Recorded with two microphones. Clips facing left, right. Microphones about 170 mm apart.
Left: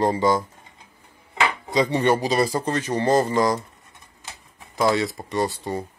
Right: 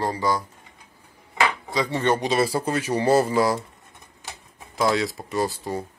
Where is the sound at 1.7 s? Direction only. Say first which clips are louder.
Left 6 dB; 20° left (ahead or behind).